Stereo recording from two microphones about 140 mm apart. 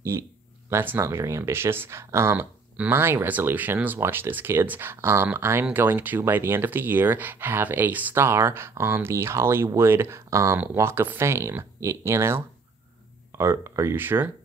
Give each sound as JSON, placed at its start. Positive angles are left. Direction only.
{"t": 0.1, "sound": "speech", "side_deg": -15}